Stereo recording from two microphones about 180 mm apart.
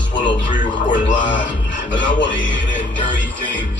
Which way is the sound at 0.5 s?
45° left (ahead or behind).